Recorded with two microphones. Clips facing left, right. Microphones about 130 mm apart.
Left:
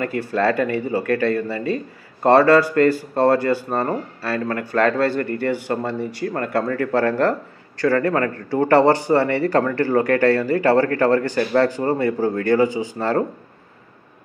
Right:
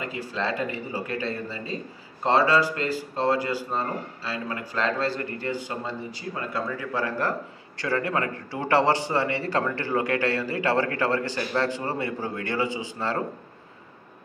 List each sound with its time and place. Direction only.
0.0 s speech: 55° left (ahead or behind)
7.8 s a man's voice: 45° left (ahead or behind)